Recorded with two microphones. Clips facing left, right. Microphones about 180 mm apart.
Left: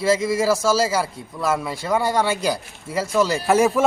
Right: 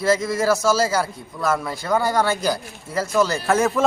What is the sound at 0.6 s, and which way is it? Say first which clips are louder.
Speech: even; 30° left (ahead or behind).